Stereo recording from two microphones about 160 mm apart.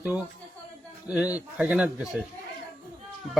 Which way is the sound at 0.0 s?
10° right (ahead or behind).